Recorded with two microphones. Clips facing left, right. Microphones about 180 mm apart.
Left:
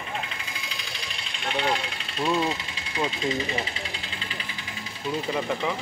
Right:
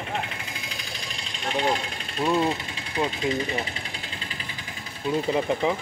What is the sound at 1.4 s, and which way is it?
Speech, 40° right (ahead or behind).